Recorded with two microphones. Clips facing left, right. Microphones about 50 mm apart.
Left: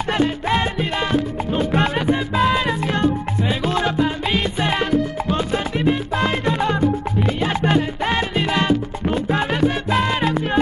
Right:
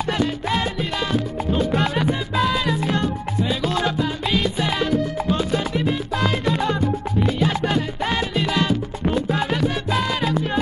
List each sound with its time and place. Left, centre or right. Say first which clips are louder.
0.1 s music: left 5 dB; left
1.8 s salsa music: left 3 dB; left
2.9 s music: left 3 dB; left
5.3 s salsa music: even; left
7.2 s music: left 2 dB; left